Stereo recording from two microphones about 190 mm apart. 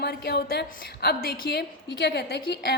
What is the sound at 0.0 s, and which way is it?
A woman's voice, 55° left (ahead or behind).